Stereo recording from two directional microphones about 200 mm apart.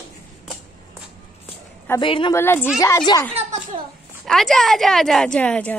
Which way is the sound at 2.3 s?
10° left (ahead or behind).